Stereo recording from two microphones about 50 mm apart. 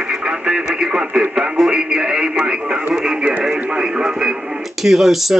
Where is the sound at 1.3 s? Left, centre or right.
Centre.